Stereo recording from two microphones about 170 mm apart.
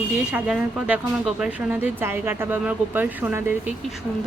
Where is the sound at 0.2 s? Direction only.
5° right (ahead or behind).